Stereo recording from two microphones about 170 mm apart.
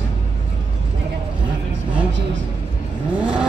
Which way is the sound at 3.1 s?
5° right (ahead or behind).